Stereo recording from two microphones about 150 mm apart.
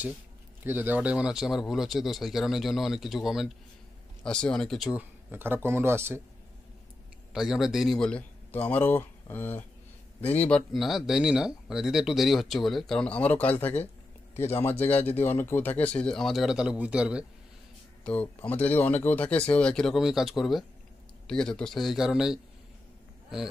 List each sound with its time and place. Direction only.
0.7 s speech: 10° right (ahead or behind)
7.3 s speech: centre (ahead or behind)
18.0 s speech: 10° left (ahead or behind)